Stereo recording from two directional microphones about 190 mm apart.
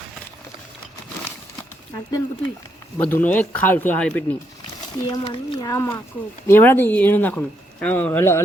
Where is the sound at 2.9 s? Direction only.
10° left (ahead or behind).